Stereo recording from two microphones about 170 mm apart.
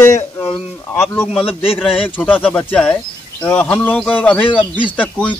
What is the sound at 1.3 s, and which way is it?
Speech, 30° left (ahead or behind).